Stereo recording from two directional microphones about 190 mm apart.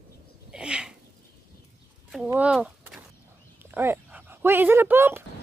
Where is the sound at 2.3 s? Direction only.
5° right (ahead or behind).